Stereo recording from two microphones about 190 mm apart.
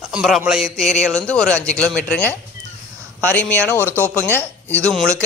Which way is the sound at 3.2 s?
10° left (ahead or behind).